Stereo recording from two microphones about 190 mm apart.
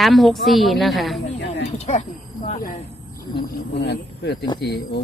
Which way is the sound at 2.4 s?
45° left (ahead or behind).